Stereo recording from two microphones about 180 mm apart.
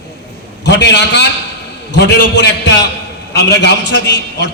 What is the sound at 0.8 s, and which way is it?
A man's voice, 70° left (ahead or behind).